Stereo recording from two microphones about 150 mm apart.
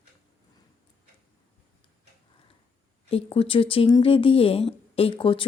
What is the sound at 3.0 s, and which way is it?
Speech, 40° left (ahead or behind).